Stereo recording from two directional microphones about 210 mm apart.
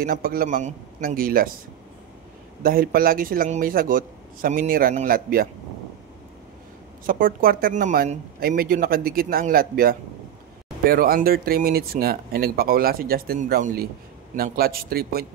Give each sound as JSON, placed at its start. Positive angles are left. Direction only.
{"t": 0.0, "sound": "speech", "side_deg": -45}
{"t": 2.6, "sound": "speech", "side_deg": -45}
{"t": 7.1, "sound": "speech", "side_deg": -40}